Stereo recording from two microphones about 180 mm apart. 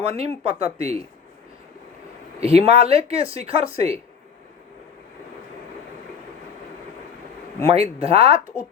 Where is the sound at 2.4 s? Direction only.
35° right (ahead or behind).